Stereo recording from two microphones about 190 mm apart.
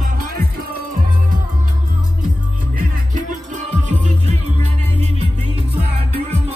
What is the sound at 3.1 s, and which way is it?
Music, 40° right (ahead or behind).